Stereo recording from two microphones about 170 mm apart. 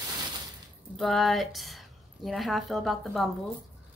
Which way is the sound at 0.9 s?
Centre (ahead or behind).